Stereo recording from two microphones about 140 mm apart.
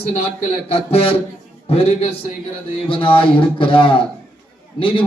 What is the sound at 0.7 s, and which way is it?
A man's voice, 45° left (ahead or behind).